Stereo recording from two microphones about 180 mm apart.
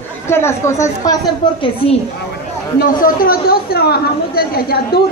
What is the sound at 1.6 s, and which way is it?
Speech, 30° left (ahead or behind).